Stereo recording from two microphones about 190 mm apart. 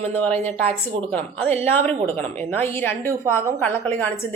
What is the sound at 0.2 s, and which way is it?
Speech, 10° left (ahead or behind).